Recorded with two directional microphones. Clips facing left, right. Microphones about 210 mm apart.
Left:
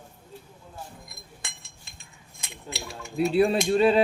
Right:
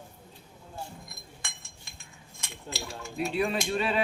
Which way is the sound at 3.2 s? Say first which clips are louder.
Left 7 dB; 35° left (ahead or behind).